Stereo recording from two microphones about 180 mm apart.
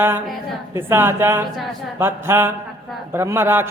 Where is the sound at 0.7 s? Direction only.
15° right (ahead or behind).